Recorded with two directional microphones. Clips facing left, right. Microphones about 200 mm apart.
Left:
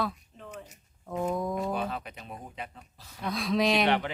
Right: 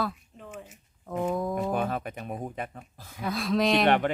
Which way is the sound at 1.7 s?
50° right (ahead or behind).